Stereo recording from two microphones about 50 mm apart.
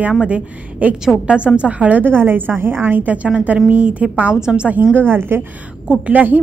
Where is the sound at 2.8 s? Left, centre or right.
Right.